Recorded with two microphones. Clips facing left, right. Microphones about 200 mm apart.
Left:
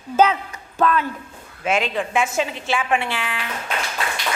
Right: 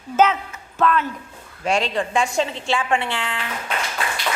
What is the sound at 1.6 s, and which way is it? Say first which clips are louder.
Speech: even; centre (ahead or behind).